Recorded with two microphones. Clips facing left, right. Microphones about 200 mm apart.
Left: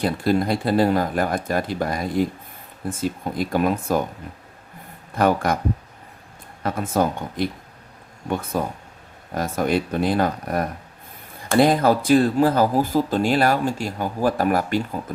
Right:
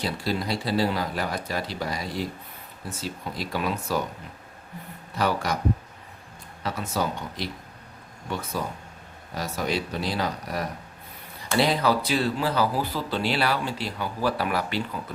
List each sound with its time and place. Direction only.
0.0 s speech: 50° left (ahead or behind)
5.1 s speech: 50° left (ahead or behind)
6.6 s speech: 50° left (ahead or behind)